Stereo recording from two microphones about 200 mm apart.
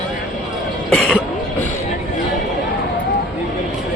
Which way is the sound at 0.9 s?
5° left (ahead or behind).